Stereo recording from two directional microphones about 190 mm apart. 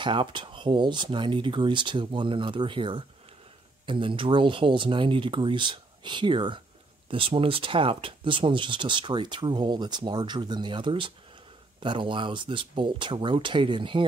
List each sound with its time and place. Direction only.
0.0 s speech: 25° right (ahead or behind)